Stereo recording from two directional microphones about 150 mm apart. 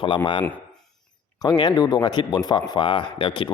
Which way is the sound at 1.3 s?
25° left (ahead or behind).